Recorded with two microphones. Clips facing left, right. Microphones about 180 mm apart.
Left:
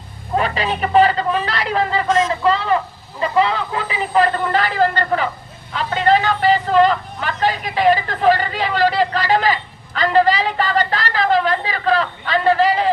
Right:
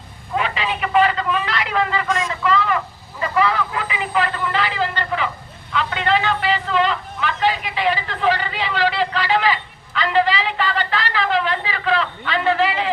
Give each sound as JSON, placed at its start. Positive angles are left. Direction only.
{"t": 0.3, "sound": "vehicle", "side_deg": 40}
{"t": 5.7, "sound": "a man's voice", "side_deg": 40}